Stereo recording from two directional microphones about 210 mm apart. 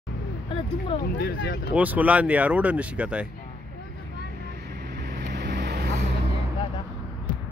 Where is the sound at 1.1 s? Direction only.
55° left (ahead or behind).